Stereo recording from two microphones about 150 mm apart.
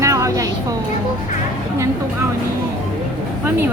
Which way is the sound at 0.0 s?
20° right (ahead or behind).